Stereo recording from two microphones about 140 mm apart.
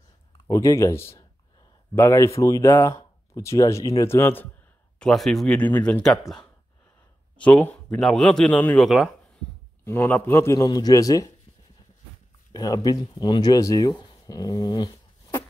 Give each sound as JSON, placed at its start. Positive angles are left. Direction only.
{"t": 0.5, "sound": "speech", "side_deg": 25}
{"t": 4.9, "sound": "speech", "side_deg": 5}
{"t": 9.8, "sound": "speech", "side_deg": 15}
{"t": 12.5, "sound": "speech", "side_deg": 25}